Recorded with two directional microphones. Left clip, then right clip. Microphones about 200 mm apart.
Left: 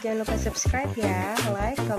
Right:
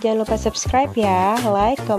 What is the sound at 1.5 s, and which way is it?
Music, 30° right (ahead or behind).